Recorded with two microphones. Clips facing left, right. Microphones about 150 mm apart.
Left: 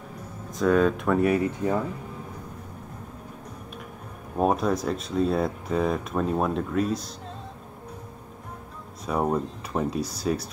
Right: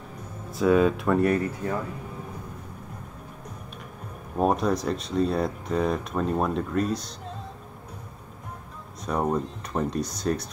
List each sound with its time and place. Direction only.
0.6 s speech: 5° right (ahead or behind)
1.4 s speech: 15° left (ahead or behind)
4.4 s speech: centre (ahead or behind)
9.0 s speech: 5° left (ahead or behind)